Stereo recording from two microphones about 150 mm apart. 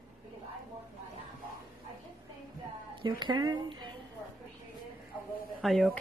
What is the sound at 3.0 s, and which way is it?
Speech, 30° right (ahead or behind).